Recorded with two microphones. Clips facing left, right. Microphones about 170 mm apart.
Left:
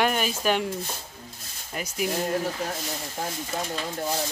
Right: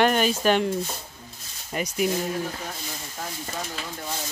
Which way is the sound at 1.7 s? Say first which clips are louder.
Right 4 dB; centre (ahead or behind).